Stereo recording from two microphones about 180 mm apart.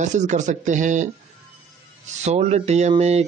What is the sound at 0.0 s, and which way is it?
Speech, 40° right (ahead or behind).